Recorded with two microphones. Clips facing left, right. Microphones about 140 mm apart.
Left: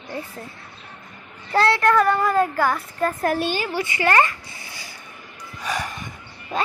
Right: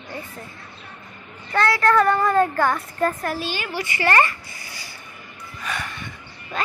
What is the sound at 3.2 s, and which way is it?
Speech, 50° left (ahead or behind).